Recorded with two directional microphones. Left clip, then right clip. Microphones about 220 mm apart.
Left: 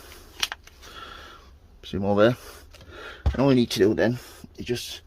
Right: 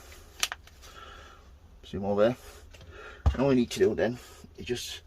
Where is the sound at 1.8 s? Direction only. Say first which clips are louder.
Left 5 dB; 45° left (ahead or behind).